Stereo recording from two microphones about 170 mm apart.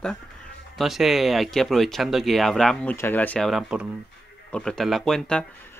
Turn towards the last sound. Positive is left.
turn(degrees=0)  # may be behind; listen again after turning